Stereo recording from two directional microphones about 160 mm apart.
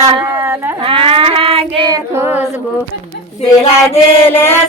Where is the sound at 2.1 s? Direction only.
15° right (ahead or behind).